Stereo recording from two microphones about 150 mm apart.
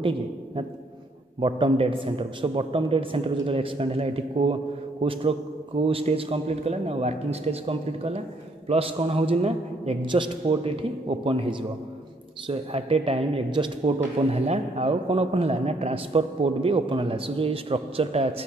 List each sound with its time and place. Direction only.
1.4 s a man's voice: 35° right (ahead or behind)
12.4 s a man's voice: 40° right (ahead or behind)